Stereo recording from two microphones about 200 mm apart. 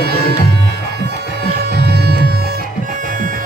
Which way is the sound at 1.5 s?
55° right (ahead or behind).